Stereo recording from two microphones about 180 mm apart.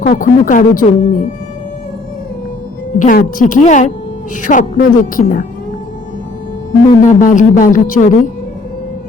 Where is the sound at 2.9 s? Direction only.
50° left (ahead or behind).